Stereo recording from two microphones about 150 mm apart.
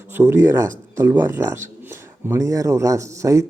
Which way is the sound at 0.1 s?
15° right (ahead or behind).